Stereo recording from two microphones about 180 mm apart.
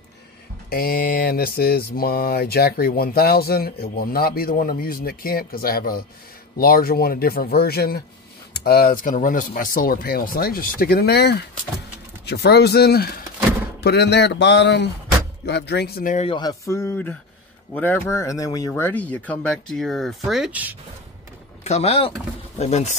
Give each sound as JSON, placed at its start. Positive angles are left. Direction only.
{"t": 0.7, "sound": "speech", "side_deg": 55}
{"t": 13.8, "sound": "speech", "side_deg": 70}
{"t": 16.3, "sound": "speech", "side_deg": 20}
{"t": 21.6, "sound": "speech", "side_deg": 35}